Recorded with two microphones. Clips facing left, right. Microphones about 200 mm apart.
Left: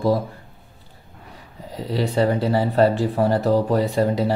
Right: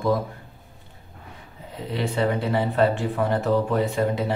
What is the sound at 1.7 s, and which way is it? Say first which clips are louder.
Speech: left 4 dB; 35° left (ahead or behind).